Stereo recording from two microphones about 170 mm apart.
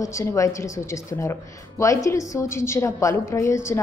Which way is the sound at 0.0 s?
15° left (ahead or behind).